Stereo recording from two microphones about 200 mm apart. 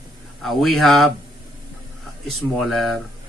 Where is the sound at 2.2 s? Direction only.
Centre (ahead or behind).